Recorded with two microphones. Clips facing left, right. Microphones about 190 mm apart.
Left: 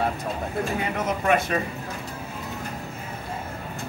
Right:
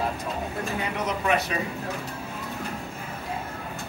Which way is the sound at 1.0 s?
50° left (ahead or behind).